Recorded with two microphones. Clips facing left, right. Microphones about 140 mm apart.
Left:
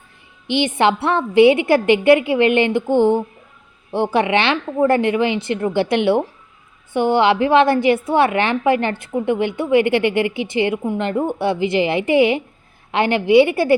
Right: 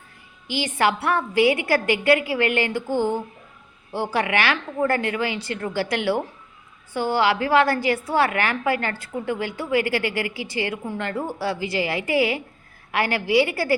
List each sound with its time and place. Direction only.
0.4 s a woman's voice: 25° left (ahead or behind)